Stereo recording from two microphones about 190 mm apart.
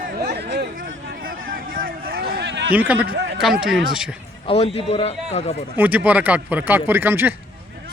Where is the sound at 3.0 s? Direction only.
70° right (ahead or behind).